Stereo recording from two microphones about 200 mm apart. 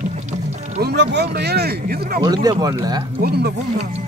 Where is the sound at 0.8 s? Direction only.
55° right (ahead or behind).